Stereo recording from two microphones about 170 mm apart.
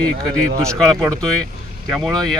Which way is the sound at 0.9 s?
5° left (ahead or behind).